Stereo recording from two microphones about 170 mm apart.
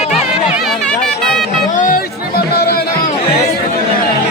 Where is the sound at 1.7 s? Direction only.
55° left (ahead or behind).